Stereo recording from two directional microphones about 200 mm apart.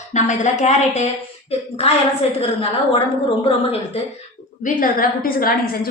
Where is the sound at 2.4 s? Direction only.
25° left (ahead or behind).